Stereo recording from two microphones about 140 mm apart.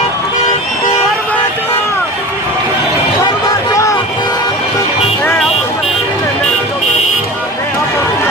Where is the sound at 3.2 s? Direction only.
20° left (ahead or behind).